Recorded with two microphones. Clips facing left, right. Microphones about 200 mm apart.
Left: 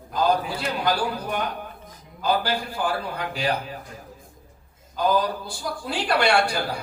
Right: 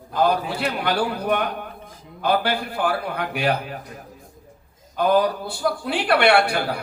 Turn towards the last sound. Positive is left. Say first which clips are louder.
# right 3 dB
turn(degrees=-60)  # may be behind; listen again after turning